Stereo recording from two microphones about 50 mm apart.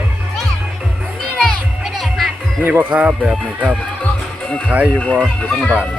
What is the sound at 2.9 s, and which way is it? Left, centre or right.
Speech, right.